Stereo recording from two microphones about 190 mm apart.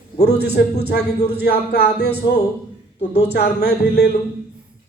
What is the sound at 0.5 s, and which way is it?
A man's voice, 55° left (ahead or behind).